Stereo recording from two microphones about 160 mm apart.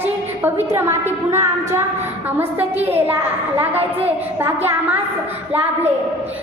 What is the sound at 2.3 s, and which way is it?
A woman's voice, 15° right (ahead or behind).